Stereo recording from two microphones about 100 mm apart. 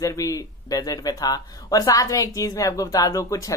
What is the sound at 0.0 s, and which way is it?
Speech, 35° left (ahead or behind).